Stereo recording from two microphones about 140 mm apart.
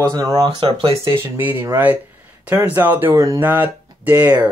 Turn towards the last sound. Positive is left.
turn(degrees=-15)  # may be behind; listen again after turning